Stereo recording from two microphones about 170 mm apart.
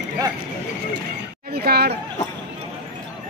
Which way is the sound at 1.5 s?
65° right (ahead or behind).